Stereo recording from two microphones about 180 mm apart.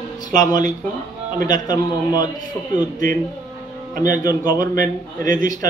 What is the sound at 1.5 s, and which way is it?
Speech, 20° left (ahead or behind).